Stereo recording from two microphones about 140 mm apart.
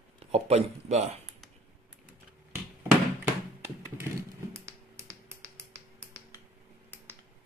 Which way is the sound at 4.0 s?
20° right (ahead or behind).